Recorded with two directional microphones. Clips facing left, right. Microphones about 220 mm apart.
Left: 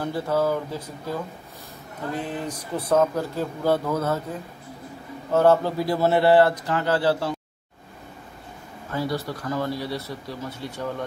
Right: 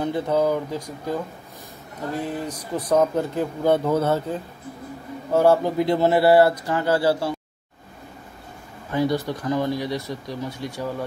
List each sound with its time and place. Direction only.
0.0 s speech: 20° right (ahead or behind)
5.3 s speech: 10° right (ahead or behind)
8.9 s speech: 20° right (ahead or behind)